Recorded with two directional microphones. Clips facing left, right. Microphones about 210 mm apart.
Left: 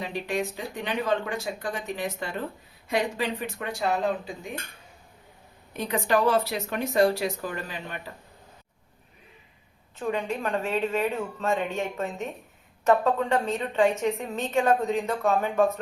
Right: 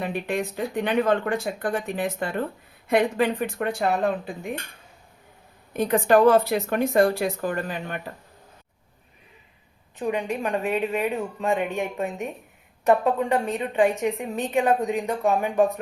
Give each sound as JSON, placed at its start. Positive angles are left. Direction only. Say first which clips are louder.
{"t": 0.0, "sound": "speech", "louder": "right 2 dB", "side_deg": -55}
{"t": 5.7, "sound": "speech", "louder": "right 6 dB", "side_deg": -50}
{"t": 10.0, "sound": "a woman's voice", "louder": "right 2 dB", "side_deg": -15}